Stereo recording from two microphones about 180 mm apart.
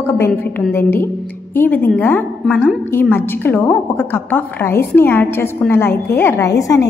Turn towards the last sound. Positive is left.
turn(degrees=20)  # may be behind; listen again after turning